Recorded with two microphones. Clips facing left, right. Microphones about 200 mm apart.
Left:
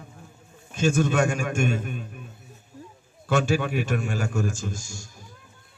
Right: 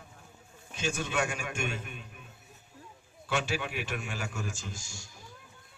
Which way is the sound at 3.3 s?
45° left (ahead or behind).